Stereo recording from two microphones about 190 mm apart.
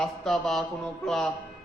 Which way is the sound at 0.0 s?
Centre (ahead or behind).